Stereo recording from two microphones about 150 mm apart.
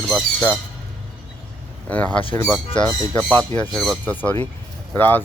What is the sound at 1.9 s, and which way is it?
Speech, 10° left (ahead or behind).